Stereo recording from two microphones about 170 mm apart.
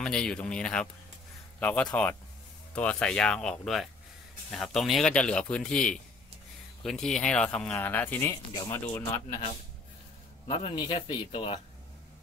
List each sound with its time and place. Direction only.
0.0 s speech: 5° left (ahead or behind)
10.4 s a man's voice: 30° left (ahead or behind)